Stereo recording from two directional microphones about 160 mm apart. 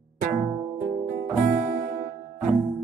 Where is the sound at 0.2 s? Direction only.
60° right (ahead or behind).